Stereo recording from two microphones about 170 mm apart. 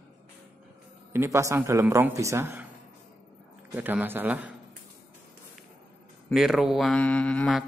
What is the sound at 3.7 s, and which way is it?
Speech, 10° right (ahead or behind).